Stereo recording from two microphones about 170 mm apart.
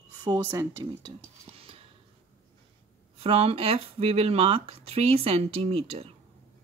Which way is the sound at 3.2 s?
35° right (ahead or behind).